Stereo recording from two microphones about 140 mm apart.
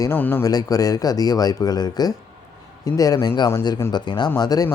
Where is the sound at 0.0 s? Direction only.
15° left (ahead or behind).